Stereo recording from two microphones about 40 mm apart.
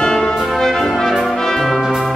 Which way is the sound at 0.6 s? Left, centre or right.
Centre.